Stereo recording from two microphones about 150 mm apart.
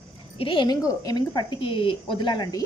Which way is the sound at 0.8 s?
25° left (ahead or behind).